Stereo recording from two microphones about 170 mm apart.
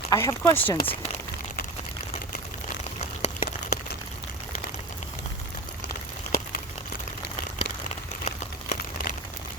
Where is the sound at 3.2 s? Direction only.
40° left (ahead or behind).